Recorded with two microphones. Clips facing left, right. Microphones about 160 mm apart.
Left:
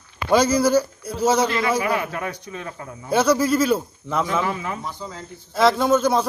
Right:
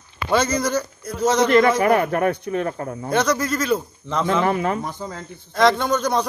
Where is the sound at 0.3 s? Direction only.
10° left (ahead or behind).